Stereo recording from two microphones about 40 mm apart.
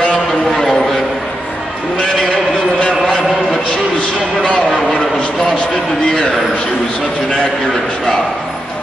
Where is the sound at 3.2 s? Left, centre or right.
Centre.